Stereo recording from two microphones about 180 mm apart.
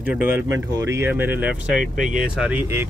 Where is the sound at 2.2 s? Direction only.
5° right (ahead or behind).